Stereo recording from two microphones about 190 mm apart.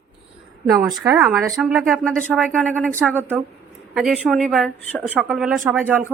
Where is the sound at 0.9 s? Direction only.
20° right (ahead or behind).